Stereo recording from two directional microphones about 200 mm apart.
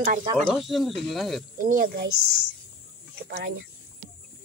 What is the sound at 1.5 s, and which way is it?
Speech, 45° right (ahead or behind).